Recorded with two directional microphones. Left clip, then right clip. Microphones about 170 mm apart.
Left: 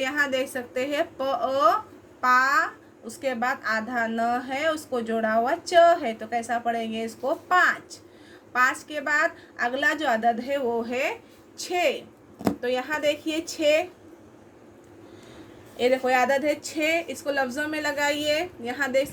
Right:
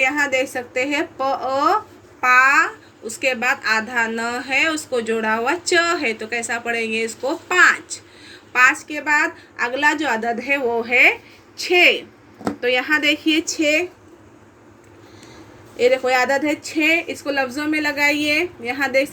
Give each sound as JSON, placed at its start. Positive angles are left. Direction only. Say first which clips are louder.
{"t": 0.0, "sound": "a woman's voice", "louder": "right 7 dB", "side_deg": -20}
{"t": 11.5, "sound": "a woman's voice", "louder": "right 10 dB", "side_deg": -20}
{"t": 15.8, "sound": "a woman's voice", "louder": "right 5 dB", "side_deg": -30}